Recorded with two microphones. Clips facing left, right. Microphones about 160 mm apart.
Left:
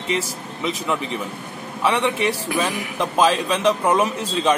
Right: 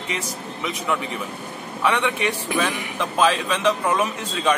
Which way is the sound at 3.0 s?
35° left (ahead or behind).